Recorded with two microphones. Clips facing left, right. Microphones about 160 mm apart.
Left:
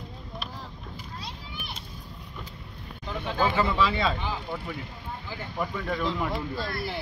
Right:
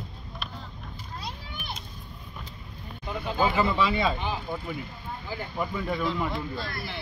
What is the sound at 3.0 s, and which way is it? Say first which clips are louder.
Speech: right 1 dB; 10° right (ahead or behind).